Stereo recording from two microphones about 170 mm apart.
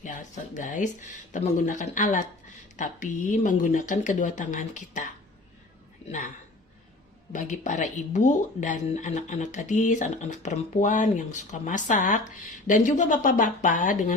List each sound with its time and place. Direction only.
0.0 s speech: 50° left (ahead or behind)
6.1 s speech: 45° left (ahead or behind)
7.3 s speech: 45° left (ahead or behind)